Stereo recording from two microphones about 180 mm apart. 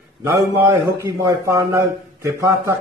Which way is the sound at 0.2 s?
15° right (ahead or behind).